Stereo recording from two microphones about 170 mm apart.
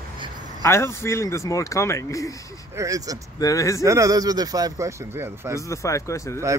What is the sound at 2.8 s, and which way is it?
Speech, 20° right (ahead or behind).